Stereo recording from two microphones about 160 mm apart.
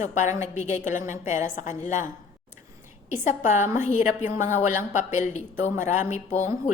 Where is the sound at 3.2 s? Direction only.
50° left (ahead or behind).